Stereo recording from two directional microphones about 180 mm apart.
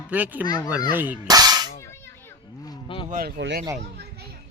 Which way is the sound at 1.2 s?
20° right (ahead or behind).